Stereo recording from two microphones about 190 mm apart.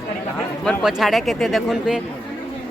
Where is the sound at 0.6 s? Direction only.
Centre (ahead or behind).